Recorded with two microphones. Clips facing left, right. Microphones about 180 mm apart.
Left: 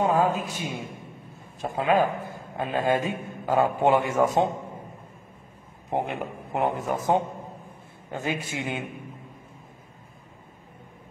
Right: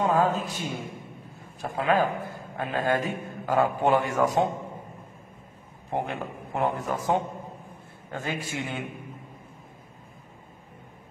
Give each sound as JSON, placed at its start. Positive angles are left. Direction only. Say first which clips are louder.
{"t": 0.0, "sound": "a man's voice", "louder": "left 1 dB", "side_deg": 15}
{"t": 5.9, "sound": "a man's voice", "louder": "left 2 dB", "side_deg": 20}